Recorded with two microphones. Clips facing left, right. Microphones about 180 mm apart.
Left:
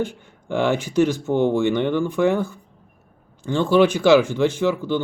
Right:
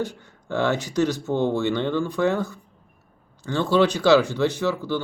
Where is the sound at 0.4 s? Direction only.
15° left (ahead or behind).